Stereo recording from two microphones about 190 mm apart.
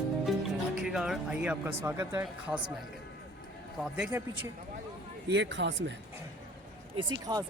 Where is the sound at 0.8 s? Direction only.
5° right (ahead or behind).